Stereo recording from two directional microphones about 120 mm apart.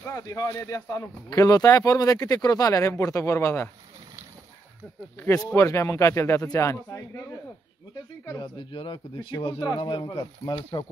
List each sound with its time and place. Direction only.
0.0 s speech: 25° left (ahead or behind)
5.2 s speech: 25° left (ahead or behind)
8.4 s a man's voice: 45° left (ahead or behind)